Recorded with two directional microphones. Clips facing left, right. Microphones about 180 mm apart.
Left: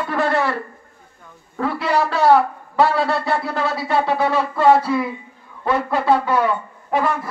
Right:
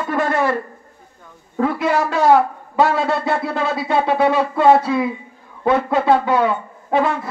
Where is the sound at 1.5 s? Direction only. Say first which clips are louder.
Right 2 dB; 20° right (ahead or behind).